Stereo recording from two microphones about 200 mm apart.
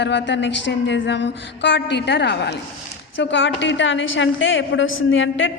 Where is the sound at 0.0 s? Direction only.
60° left (ahead or behind).